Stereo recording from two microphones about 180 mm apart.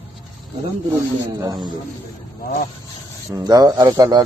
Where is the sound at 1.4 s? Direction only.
20° right (ahead or behind).